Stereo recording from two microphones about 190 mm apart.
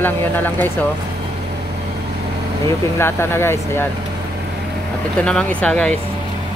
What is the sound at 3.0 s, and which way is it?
Speech, 15° left (ahead or behind).